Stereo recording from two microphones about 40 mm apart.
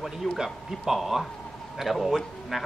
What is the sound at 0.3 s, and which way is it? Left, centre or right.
Speech, centre.